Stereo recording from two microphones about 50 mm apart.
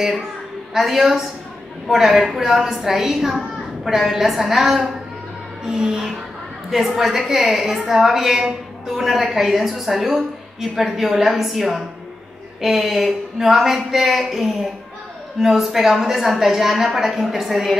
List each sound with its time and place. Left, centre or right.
0.7 s a woman's voice: centre